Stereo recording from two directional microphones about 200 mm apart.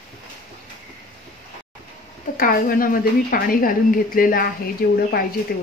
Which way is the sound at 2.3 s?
45° left (ahead or behind).